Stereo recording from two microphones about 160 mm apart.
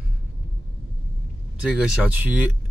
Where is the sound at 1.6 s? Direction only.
5° right (ahead or behind).